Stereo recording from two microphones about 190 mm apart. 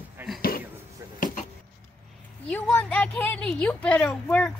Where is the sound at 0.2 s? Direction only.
10° right (ahead or behind).